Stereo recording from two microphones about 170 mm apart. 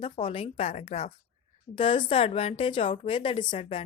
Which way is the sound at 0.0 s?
35° left (ahead or behind).